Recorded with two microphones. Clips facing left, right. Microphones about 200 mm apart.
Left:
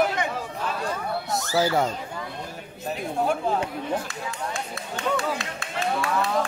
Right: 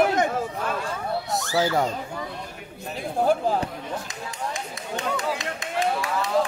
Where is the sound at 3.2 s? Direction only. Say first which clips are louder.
Right 3 dB; 35° right (ahead or behind).